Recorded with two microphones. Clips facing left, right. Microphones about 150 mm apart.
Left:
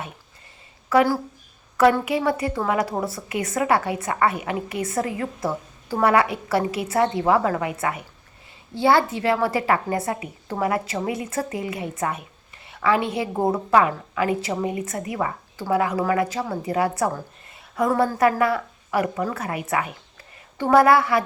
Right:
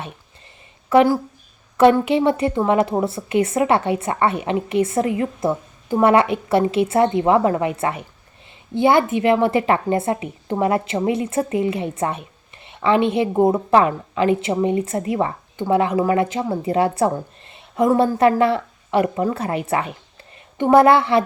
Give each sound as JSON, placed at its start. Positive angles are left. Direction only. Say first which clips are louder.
{"t": 0.9, "sound": "a woman's voice", "louder": "right 4 dB", "side_deg": -20}